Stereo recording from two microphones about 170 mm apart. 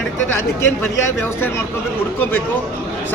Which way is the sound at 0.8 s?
10° left (ahead or behind).